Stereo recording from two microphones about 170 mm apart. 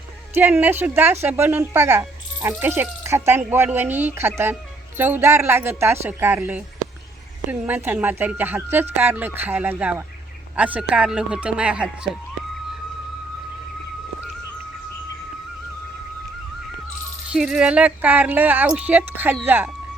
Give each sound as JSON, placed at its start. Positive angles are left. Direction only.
{"t": 0.3, "sound": "speech", "side_deg": -10}
{"t": 17.3, "sound": "speech", "side_deg": -5}